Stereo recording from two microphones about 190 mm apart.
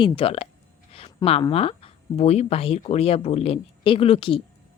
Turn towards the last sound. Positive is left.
turn(degrees=30)  # may be behind; listen again after turning